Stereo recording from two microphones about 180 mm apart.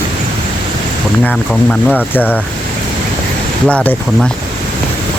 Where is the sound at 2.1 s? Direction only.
10° left (ahead or behind).